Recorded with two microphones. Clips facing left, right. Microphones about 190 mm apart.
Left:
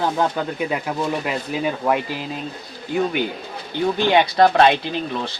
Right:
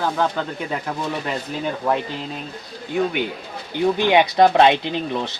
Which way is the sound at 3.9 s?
15° right (ahead or behind).